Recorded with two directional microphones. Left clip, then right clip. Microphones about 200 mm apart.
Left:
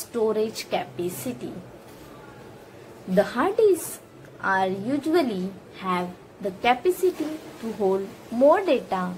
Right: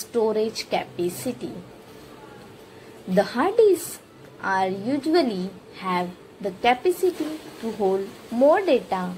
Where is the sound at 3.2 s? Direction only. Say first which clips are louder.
Right 2 dB; 20° right (ahead or behind).